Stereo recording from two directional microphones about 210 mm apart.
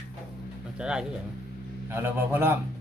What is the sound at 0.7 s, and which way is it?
Speech, 5° right (ahead or behind).